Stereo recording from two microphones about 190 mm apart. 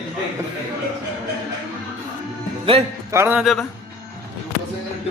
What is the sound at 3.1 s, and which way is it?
Speech, 10° right (ahead or behind).